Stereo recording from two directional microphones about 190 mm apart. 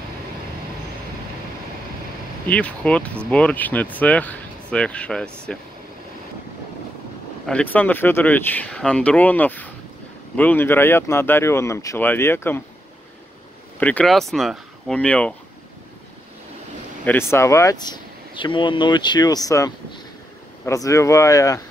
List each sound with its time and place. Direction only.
2.4 s speech: 5° left (ahead or behind)
7.4 s speech: 5° left (ahead or behind)
13.7 s speech: 10° left (ahead or behind)
17.3 s speech: 15° left (ahead or behind)